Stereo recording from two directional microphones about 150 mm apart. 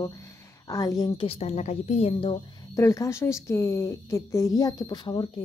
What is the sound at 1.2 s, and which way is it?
A woman's voice, 45° left (ahead or behind).